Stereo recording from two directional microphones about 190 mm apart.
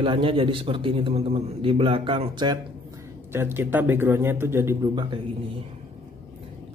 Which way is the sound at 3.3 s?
10° right (ahead or behind).